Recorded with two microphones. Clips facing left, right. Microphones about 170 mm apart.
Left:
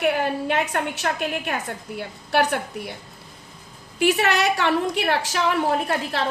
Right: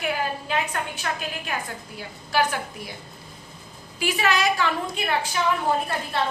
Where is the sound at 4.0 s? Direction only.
65° left (ahead or behind).